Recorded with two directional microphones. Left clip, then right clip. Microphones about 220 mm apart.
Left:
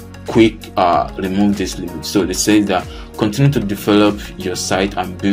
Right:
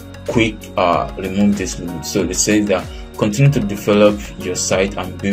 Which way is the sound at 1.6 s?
10° left (ahead or behind).